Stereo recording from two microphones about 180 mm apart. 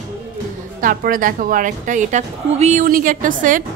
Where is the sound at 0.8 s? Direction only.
50° right (ahead or behind).